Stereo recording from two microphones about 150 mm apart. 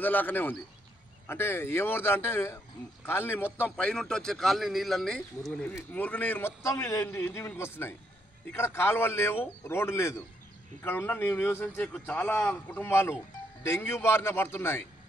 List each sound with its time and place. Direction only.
0.0 s a man's voice: 10° left (ahead or behind)